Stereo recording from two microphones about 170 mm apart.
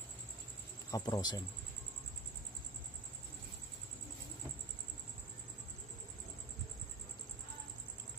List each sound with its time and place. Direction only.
0.9 s a man's voice: 25° left (ahead or behind)